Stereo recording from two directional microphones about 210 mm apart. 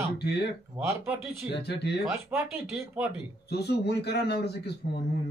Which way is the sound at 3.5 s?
50° left (ahead or behind).